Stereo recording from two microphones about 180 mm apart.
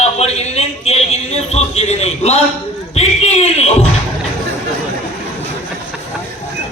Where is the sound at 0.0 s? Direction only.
35° left (ahead or behind).